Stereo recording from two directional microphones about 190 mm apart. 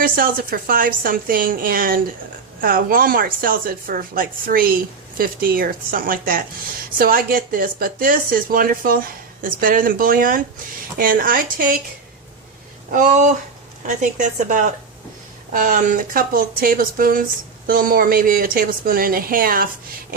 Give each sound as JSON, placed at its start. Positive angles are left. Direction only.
{"t": 0.0, "sound": "speech", "side_deg": -50}
{"t": 12.9, "sound": "speech", "side_deg": -40}